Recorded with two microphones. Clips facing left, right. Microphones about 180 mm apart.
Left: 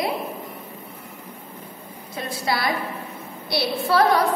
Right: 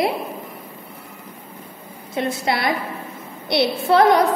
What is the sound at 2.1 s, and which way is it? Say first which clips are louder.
A woman's voice: right 4 dB; 25° right (ahead or behind).